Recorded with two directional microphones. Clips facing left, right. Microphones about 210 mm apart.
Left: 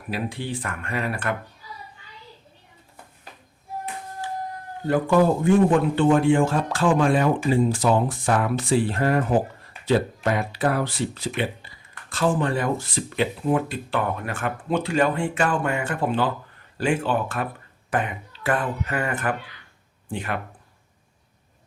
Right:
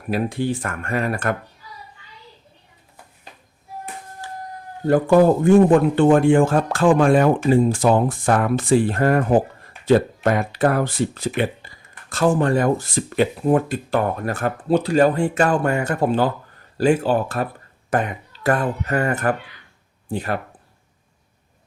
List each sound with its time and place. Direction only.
0.1 s a man's voice: 45° right (ahead or behind)
4.9 s a man's voice: 45° right (ahead or behind)
10.2 s a man's voice: 50° right (ahead or behind)